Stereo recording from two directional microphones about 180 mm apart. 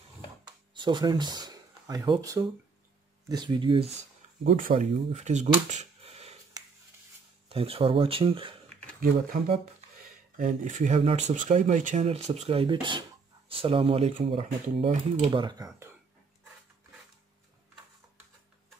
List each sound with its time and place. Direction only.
0.7 s speech: 25° right (ahead or behind)
4.6 s speech: 45° right (ahead or behind)
5.7 s a sound: 40° right (ahead or behind)
7.4 s speech: 30° right (ahead or behind)
10.3 s speech: 45° right (ahead or behind); by 15.9 s 20° right (ahead or behind)